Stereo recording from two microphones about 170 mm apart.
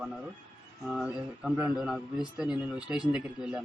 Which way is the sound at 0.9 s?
5° right (ahead or behind).